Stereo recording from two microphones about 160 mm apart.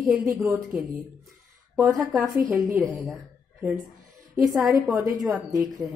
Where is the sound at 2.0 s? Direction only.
Centre (ahead or behind).